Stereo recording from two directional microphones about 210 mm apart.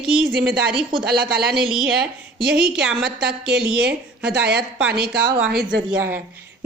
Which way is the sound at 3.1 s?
50° right (ahead or behind).